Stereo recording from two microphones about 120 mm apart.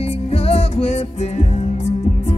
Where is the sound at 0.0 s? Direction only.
60° left (ahead or behind).